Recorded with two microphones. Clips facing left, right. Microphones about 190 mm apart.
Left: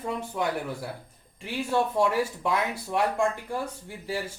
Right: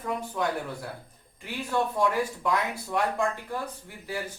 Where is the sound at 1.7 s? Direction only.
20° left (ahead or behind).